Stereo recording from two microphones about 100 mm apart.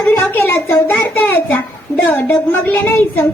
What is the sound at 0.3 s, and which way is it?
A woman's voice, 20° left (ahead or behind).